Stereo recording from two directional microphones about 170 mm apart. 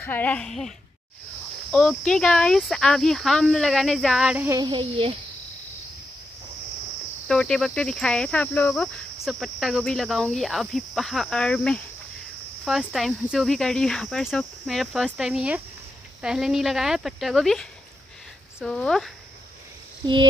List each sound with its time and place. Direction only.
0.0 s speech: 10° left (ahead or behind)
4.5 s speech: 25° right (ahead or behind)
7.2 s speech: 5° left (ahead or behind)